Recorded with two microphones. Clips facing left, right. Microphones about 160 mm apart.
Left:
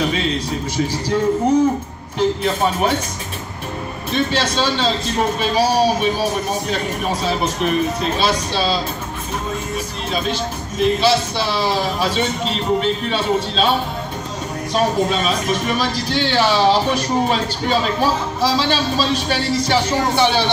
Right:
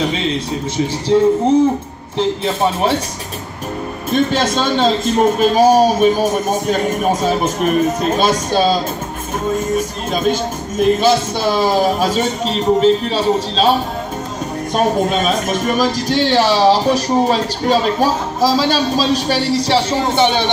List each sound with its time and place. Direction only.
1.1 s a man's voice: 25° right (ahead or behind)
4.1 s a man's voice: 50° right (ahead or behind)
9.8 s a man's voice: 45° right (ahead or behind)
14.7 s a man's voice: 50° right (ahead or behind); by 20.4 s 20° right (ahead or behind)